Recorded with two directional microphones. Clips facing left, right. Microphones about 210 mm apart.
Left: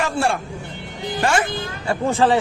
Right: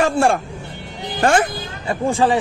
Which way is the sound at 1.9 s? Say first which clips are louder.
Even; 15° right (ahead or behind).